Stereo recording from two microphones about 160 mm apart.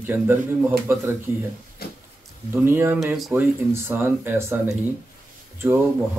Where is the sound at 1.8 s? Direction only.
70° left (ahead or behind).